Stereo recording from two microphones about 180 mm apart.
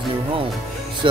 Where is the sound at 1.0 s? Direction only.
25° right (ahead or behind).